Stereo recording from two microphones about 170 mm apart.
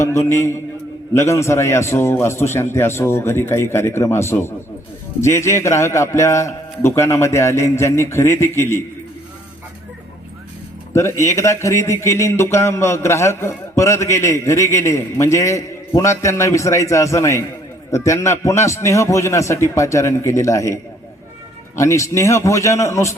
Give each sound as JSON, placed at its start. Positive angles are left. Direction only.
{"t": 0.0, "sound": "speech", "side_deg": 15}
{"t": 10.9, "sound": "speech", "side_deg": 15}
{"t": 21.8, "sound": "speech", "side_deg": 20}